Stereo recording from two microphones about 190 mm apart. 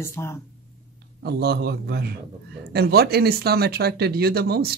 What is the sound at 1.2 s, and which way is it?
Speech, 55° right (ahead or behind).